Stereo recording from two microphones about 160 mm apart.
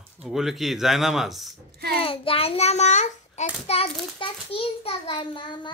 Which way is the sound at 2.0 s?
35° left (ahead or behind).